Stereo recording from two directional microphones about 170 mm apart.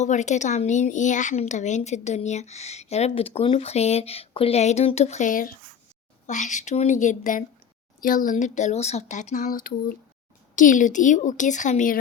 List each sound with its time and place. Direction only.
0.0 s speech: 45° left (ahead or behind)